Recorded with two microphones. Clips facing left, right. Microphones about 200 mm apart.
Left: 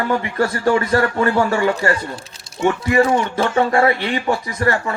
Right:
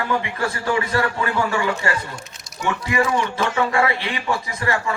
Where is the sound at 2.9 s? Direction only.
40° left (ahead or behind).